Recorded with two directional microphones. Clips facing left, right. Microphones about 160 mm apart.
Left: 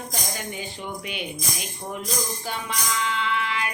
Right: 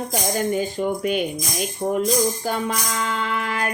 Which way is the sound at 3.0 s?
45° right (ahead or behind).